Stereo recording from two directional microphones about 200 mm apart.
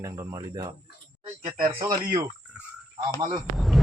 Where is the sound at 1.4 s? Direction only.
35° right (ahead or behind).